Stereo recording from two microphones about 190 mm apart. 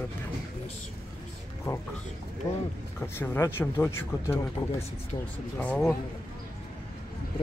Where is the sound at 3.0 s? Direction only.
10° left (ahead or behind).